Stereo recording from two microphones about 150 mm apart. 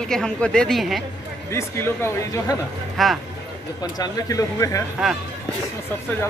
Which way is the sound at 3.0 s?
Centre (ahead or behind).